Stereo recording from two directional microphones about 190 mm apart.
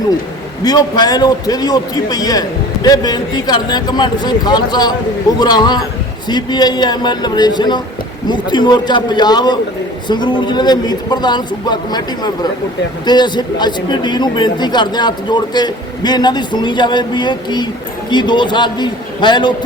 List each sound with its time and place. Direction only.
0.6 s speech: 20° left (ahead or behind)